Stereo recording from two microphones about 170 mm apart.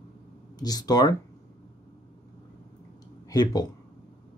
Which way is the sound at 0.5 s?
25° left (ahead or behind).